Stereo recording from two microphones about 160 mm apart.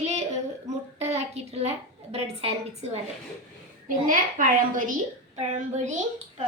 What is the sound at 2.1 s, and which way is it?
Speech, 40° right (ahead or behind).